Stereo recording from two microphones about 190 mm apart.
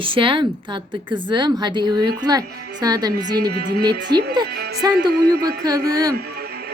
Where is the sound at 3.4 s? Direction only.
55° right (ahead or behind).